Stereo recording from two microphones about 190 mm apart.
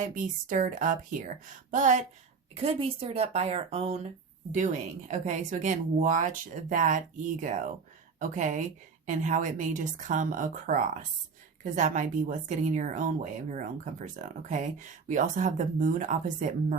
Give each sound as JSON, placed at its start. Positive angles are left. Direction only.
{"t": 0.0, "sound": "a woman's voice", "side_deg": -45}
{"t": 2.6, "sound": "speech", "side_deg": -30}